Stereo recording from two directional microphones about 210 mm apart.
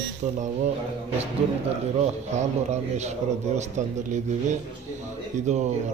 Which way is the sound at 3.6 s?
35° right (ahead or behind).